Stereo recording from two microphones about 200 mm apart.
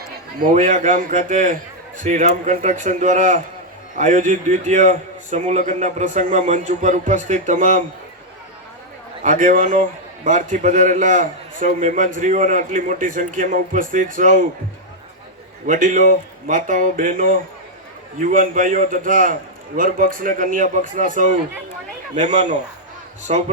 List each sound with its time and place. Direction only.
0.5 s a man's voice: 35° right (ahead or behind)
9.2 s a man's voice: 40° right (ahead or behind)
15.6 s a man's voice: 40° right (ahead or behind)